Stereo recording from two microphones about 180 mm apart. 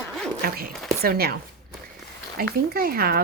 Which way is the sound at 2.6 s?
55° right (ahead or behind).